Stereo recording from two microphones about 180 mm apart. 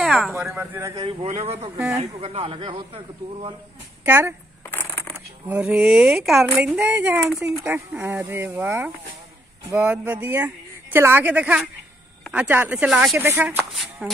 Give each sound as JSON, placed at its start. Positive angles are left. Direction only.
{"t": 0.0, "sound": "a sound", "side_deg": 0}
{"t": 0.3, "sound": "speech", "side_deg": -15}
{"t": 1.2, "sound": "a man's voice", "side_deg": -35}
{"t": 4.0, "sound": "speech", "side_deg": -10}
{"t": 4.6, "sound": "coin", "side_deg": 15}
{"t": 5.5, "sound": "speech", "side_deg": -5}
{"t": 13.7, "sound": "a sound", "side_deg": 0}